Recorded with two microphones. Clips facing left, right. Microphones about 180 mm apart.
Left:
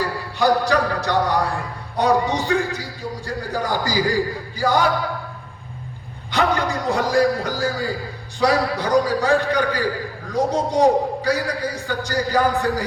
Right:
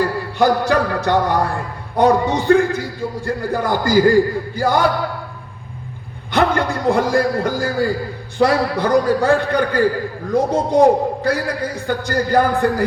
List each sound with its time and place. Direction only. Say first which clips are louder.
0.0 s music: right 4 dB; 55° right (ahead or behind)
2.0 s a man's voice: right 4 dB; 55° right (ahead or behind)
6.3 s a man's voice: right 3 dB; 55° right (ahead or behind)